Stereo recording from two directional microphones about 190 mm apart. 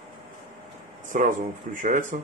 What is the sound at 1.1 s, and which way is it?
Speech, 40° right (ahead or behind).